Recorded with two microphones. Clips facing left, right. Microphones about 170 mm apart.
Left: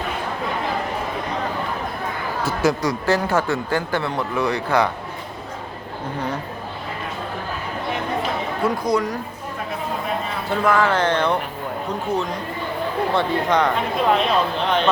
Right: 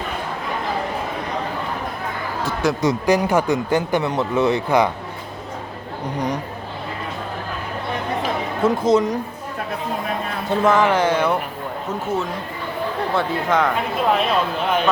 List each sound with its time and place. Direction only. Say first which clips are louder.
2.8 s speech: right 3 dB; 15° right (ahead or behind)
6.1 s speech: right 3 dB; 15° right (ahead or behind)
8.6 s speech: right 5 dB; 25° right (ahead or behind)
10.5 s speech: right 2 dB; 20° right (ahead or behind)
13.1 s speech: even; centre (ahead or behind)